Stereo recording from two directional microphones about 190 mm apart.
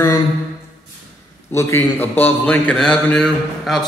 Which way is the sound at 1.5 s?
15° left (ahead or behind).